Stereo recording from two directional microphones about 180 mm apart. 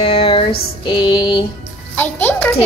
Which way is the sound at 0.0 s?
30° left (ahead or behind).